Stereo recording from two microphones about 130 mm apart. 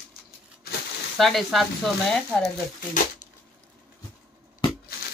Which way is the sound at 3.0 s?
85° left.